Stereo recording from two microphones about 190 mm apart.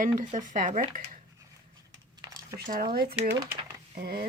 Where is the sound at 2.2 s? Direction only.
20° right (ahead or behind).